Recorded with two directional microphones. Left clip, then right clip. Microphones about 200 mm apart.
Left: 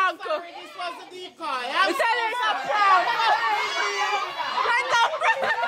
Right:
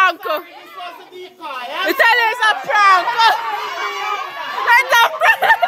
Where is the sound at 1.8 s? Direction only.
50° right (ahead or behind).